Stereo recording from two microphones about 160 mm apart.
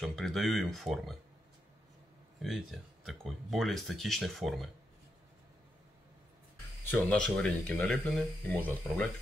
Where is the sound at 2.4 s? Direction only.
Centre (ahead or behind).